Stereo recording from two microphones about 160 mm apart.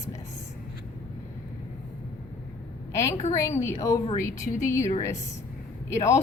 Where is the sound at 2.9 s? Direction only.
15° left (ahead or behind).